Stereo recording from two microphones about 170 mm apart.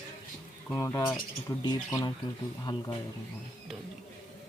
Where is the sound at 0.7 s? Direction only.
20° left (ahead or behind).